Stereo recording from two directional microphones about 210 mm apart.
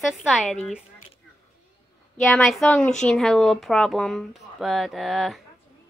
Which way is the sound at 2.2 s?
Centre (ahead or behind).